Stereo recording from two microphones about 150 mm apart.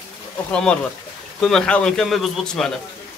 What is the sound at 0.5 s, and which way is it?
A man's voice, 5° left (ahead or behind).